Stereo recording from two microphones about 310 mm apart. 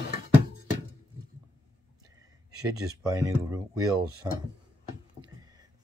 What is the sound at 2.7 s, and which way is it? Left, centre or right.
Speech, centre.